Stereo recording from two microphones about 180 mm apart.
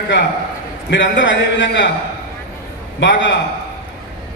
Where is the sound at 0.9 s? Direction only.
90° left.